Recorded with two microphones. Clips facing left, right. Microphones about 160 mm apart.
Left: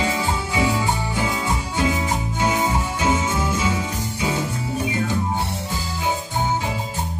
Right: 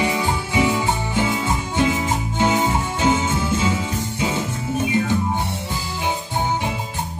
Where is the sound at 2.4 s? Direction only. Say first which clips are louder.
Right 3 dB; 30° right (ahead or behind).